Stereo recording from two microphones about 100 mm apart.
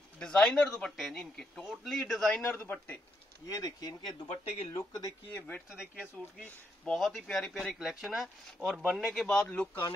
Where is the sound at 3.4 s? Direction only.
35° left (ahead or behind).